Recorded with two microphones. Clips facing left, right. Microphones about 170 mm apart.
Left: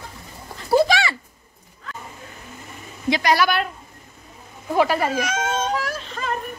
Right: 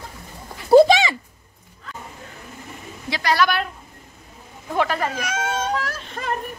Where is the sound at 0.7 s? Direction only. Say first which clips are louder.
Right 6 dB; 20° right (ahead or behind).